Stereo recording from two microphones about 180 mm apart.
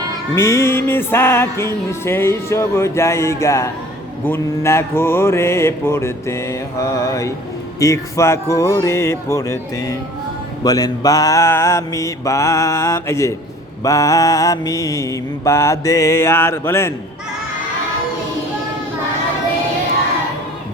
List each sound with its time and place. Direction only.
0.3 s music: 15° left (ahead or behind)